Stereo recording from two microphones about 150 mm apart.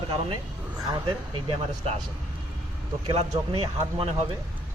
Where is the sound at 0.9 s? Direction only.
35° right (ahead or behind).